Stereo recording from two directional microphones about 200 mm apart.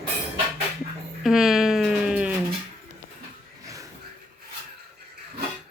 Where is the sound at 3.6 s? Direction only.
15° right (ahead or behind).